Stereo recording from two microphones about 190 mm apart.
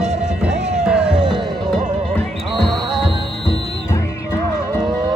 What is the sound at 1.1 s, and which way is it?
Music, 25° right (ahead or behind).